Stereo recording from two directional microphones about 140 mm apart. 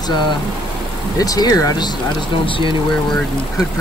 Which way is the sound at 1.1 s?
25° left (ahead or behind).